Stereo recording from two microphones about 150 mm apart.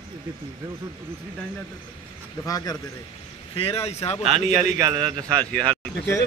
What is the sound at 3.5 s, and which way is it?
Speech, 40° left (ahead or behind).